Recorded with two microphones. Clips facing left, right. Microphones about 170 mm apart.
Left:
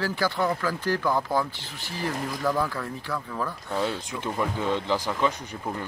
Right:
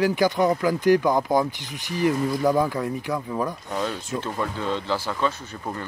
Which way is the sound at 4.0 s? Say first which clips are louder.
Right 1 dB; 15° left (ahead or behind).